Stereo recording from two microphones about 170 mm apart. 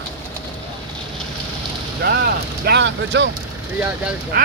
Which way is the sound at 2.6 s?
85° right.